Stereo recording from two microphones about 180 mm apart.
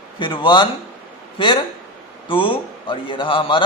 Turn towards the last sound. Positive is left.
turn(degrees=30)  # may be behind; listen again after turning